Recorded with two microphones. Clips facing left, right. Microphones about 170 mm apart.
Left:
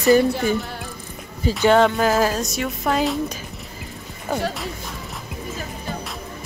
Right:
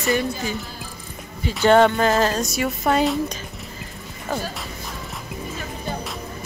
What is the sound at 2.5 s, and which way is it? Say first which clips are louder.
Speech: right 2 dB; 5° right (ahead or behind).